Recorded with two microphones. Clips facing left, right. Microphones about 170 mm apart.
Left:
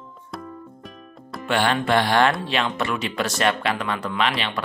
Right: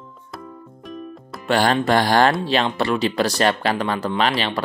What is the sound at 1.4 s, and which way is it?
Speech, 35° right (ahead or behind).